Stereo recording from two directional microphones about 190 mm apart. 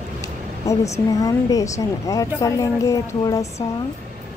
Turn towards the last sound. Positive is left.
turn(degrees=15)  # may be behind; listen again after turning